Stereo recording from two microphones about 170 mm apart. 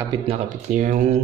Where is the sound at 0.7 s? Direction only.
50° right (ahead or behind).